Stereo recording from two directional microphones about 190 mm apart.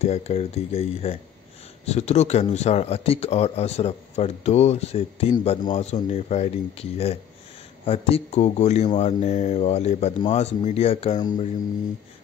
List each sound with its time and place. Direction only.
0.0 s a man's voice: 35° left (ahead or behind)